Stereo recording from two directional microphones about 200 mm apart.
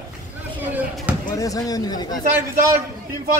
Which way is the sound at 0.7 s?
5° right (ahead or behind).